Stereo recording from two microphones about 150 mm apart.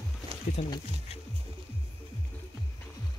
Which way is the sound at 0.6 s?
40° left (ahead or behind).